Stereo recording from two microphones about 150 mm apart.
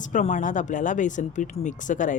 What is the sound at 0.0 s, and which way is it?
Speech, 55° left (ahead or behind).